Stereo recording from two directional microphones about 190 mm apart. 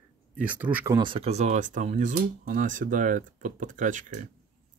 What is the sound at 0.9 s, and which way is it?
Speech, 25° right (ahead or behind).